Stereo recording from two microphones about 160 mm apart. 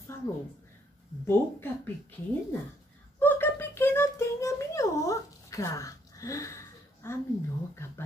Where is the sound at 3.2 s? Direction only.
10° left (ahead or behind).